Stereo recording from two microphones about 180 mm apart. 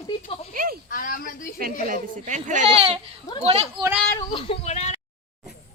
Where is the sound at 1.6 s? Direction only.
50° right (ahead or behind).